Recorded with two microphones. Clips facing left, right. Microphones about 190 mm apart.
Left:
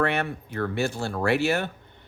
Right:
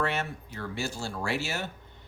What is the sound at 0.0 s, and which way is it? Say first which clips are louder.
Speech: left 5 dB; 60° left (ahead or behind).